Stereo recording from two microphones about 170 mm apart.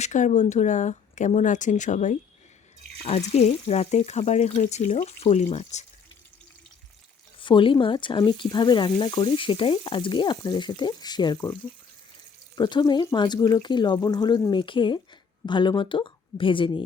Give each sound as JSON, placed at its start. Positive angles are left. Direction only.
{"t": 0.0, "sound": "speech", "side_deg": 45}
{"t": 7.3, "sound": "speech", "side_deg": 30}
{"t": 12.5, "sound": "speech", "side_deg": 25}